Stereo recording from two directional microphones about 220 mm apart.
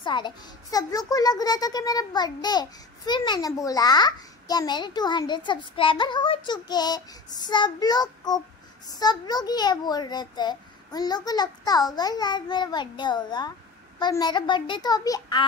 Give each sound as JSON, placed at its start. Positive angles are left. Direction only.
{"t": 0.0, "sound": "a child's voice", "side_deg": 20}